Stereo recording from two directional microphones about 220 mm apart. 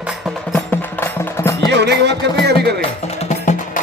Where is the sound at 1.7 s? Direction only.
50° right (ahead or behind).